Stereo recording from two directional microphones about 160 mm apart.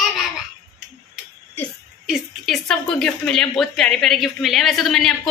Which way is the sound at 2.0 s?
Centre (ahead or behind).